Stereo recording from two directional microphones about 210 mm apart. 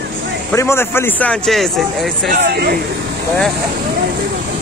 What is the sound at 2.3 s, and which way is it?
Speech, 50° right (ahead or behind).